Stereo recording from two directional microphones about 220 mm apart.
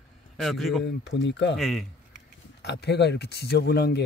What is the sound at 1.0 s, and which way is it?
Speech, 55° left (ahead or behind).